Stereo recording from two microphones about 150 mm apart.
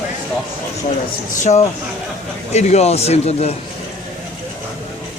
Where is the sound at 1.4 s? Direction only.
45° left (ahead or behind).